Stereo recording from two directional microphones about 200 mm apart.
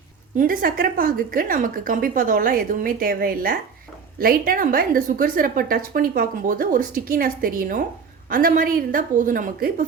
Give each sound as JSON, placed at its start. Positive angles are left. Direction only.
{"t": 0.3, "sound": "a woman's voice", "side_deg": -45}